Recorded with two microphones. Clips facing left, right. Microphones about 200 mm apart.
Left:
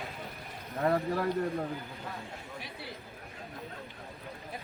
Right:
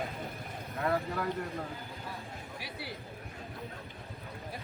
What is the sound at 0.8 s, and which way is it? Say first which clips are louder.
Vehicle: left 3 dB; 30° left (ahead or behind).